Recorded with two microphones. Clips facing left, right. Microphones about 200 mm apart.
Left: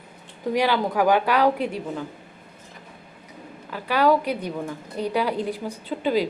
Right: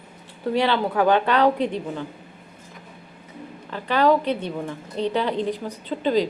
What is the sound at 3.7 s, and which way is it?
A woman's voice, 10° left (ahead or behind).